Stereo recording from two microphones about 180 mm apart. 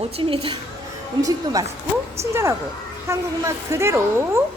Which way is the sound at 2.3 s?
15° right (ahead or behind).